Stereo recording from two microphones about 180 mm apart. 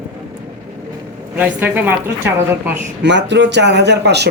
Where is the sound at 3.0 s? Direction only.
75° right (ahead or behind).